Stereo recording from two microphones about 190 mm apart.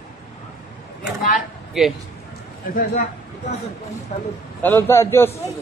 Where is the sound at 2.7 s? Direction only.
45° left (ahead or behind).